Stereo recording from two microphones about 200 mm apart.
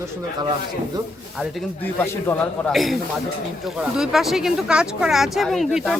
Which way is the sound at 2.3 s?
10° left (ahead or behind).